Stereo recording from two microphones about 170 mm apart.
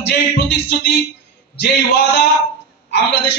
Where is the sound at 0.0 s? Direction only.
75° left (ahead or behind).